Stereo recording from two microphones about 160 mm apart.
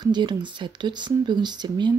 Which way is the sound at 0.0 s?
30° right (ahead or behind).